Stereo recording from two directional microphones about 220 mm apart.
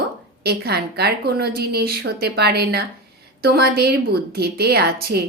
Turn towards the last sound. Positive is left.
turn(degrees=-45)  # may be behind; listen again after turning